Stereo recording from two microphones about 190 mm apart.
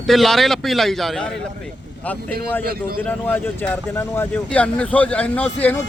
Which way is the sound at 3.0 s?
10° left (ahead or behind).